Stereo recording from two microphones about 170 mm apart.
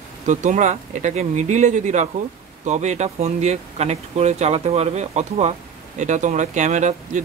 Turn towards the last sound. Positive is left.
turn(degrees=-45)  # may be behind; listen again after turning